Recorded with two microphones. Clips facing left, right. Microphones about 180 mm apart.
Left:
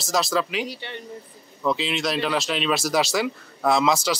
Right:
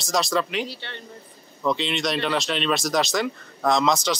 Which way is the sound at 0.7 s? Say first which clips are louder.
Left 3 dB; 15° left (ahead or behind).